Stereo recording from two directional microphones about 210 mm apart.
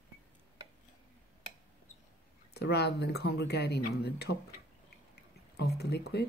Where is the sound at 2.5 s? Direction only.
50° left (ahead or behind).